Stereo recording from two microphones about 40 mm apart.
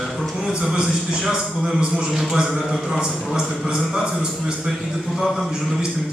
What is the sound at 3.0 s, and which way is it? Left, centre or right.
A man's voice, right.